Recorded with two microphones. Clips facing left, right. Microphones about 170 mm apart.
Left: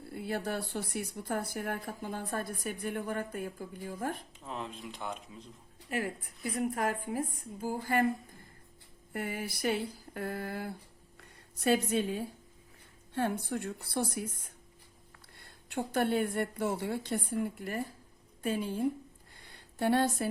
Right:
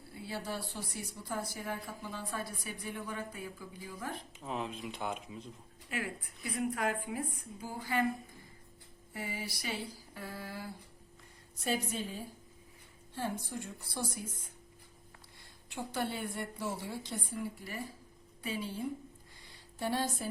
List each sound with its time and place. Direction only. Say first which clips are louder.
0.1 s a woman's voice: left 5 dB; 55° left (ahead or behind)
4.4 s speech: right 2 dB; 5° right (ahead or behind)
5.9 s a woman's voice: left 4 dB; 40° left (ahead or behind)
9.1 s a woman's voice: left 5 dB; 55° left (ahead or behind)
11.2 s a woman's voice: left 9 dB; 65° left (ahead or behind)
15.4 s a woman's voice: left 6 dB; 60° left (ahead or behind)
19.4 s a sound: left 6 dB; 60° left (ahead or behind)